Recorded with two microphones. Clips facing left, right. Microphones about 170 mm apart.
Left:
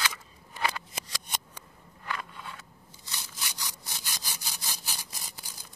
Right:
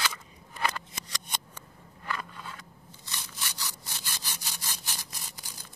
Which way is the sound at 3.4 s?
15° left (ahead or behind).